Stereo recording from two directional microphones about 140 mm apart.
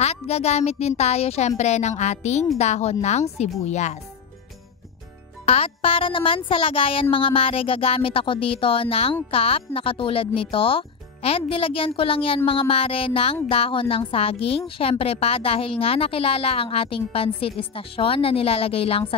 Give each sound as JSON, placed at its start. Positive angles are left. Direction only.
{"t": 0.0, "sound": "a woman's voice", "side_deg": 50}
{"t": 5.4, "sound": "music", "side_deg": 45}
{"t": 13.5, "sound": "a woman's voice", "side_deg": 40}